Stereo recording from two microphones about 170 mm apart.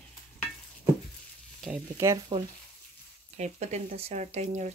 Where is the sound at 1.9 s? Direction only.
20° right (ahead or behind).